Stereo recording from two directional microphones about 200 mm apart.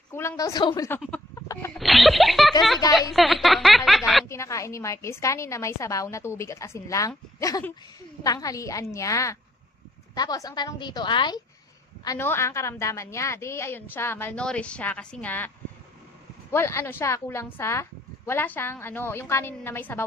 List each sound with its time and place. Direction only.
0.1 s speech: 15° left (ahead or behind)
1.8 s music: centre (ahead or behind)
2.9 s a woman's voice: centre (ahead or behind)
4.3 s a woman's voice: 15° left (ahead or behind)
16.5 s a woman's voice: 10° left (ahead or behind)